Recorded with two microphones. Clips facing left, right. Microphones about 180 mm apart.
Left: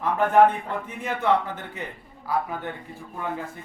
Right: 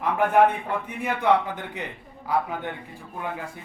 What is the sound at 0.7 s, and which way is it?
A man's voice, 10° right (ahead or behind).